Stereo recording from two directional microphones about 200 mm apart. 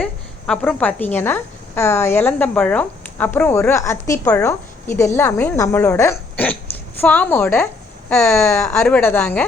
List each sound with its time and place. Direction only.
0.0 s a woman's voice: 5° left (ahead or behind)
8.4 s a woman's voice: 15° left (ahead or behind)
8.6 s a woman's voice: 5° left (ahead or behind)